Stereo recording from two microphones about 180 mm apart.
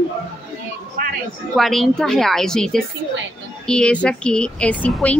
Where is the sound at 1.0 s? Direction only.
55° right (ahead or behind).